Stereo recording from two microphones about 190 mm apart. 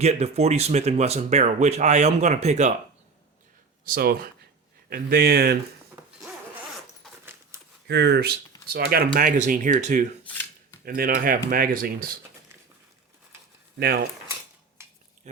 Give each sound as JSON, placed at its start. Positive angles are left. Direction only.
{"t": 0.0, "sound": "speech", "side_deg": -35}
{"t": 3.8, "sound": "speech", "side_deg": -50}
{"t": 7.9, "sound": "speech", "side_deg": -60}
{"t": 10.2, "sound": "shuffling cards", "side_deg": 10}
{"t": 10.8, "sound": "speech", "side_deg": -50}
{"t": 13.7, "sound": "speech", "side_deg": -55}
{"t": 14.8, "sound": "a sound", "side_deg": -15}